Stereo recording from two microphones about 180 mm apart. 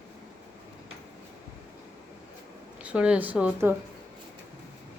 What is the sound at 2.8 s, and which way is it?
Speech, 5° right (ahead or behind).